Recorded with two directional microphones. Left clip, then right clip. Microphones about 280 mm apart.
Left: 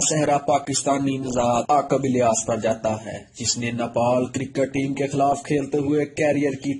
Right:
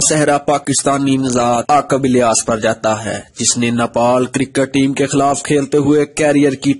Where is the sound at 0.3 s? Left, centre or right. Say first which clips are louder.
Right 6 dB; right.